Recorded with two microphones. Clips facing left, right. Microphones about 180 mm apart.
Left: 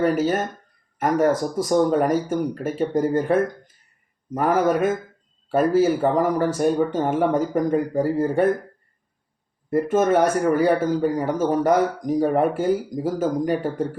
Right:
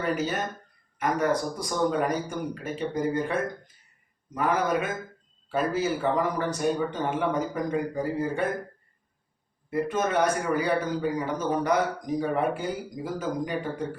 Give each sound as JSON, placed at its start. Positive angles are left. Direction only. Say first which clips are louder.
{"t": 0.0, "sound": "speech", "louder": "left 8 dB", "side_deg": 45}
{"t": 4.4, "sound": "speech", "louder": "left 6 dB", "side_deg": 45}
{"t": 9.6, "sound": "speech", "louder": "left 8 dB", "side_deg": 45}